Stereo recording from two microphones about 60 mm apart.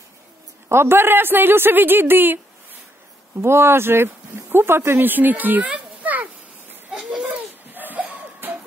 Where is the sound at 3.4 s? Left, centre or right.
Right.